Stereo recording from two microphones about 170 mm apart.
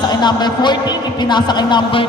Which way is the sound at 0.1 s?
25° left (ahead or behind).